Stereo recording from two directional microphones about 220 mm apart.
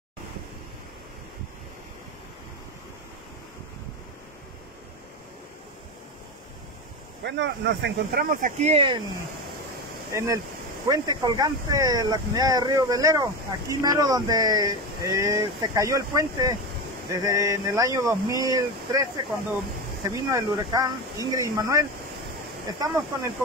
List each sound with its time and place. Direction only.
7.2 s speech: 50° right (ahead or behind); by 9.0 s 25° right (ahead or behind)
10.1 s speech: 15° right (ahead or behind)